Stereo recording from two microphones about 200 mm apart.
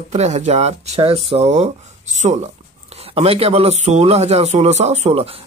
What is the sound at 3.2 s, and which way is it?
Speech, 30° right (ahead or behind).